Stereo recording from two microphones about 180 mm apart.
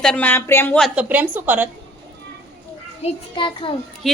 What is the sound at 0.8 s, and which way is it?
Speech, 5° right (ahead or behind).